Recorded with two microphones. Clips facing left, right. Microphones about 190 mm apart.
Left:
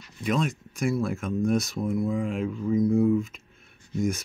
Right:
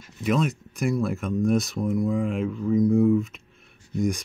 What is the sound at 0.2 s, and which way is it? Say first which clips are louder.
Speech: right 3 dB; centre (ahead or behind).